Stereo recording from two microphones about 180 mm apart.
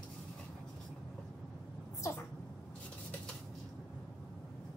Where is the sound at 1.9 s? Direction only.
15° left (ahead or behind).